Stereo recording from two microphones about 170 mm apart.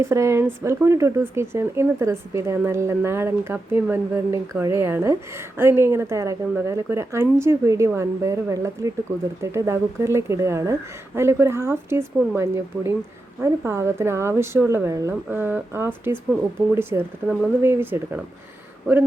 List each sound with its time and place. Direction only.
0.0 s speech: 15° right (ahead or behind)
16.9 s speech: 15° right (ahead or behind)